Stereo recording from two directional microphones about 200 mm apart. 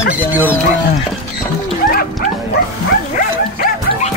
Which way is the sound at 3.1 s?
45° left (ahead or behind).